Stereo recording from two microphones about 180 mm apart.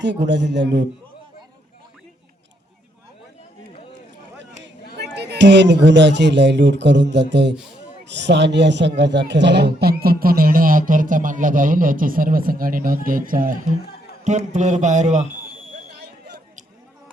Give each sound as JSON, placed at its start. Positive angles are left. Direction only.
{"t": 0.0, "sound": "a man's voice", "side_deg": -75}
{"t": 4.9, "sound": "a man's voice", "side_deg": -65}
{"t": 13.8, "sound": "a sound", "side_deg": 60}
{"t": 14.3, "sound": "a man's voice", "side_deg": -40}
{"t": 15.9, "sound": "fire alarm", "side_deg": -65}